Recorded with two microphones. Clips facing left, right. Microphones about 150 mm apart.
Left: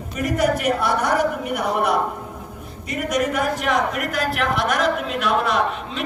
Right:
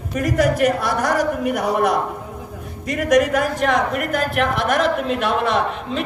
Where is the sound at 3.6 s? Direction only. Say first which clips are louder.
Right 2 dB; 50° right (ahead or behind).